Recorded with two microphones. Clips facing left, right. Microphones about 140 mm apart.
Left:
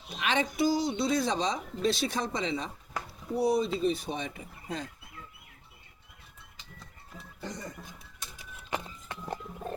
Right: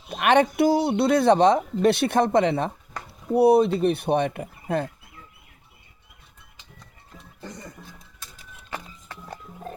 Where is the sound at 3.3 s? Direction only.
60° right (ahead or behind).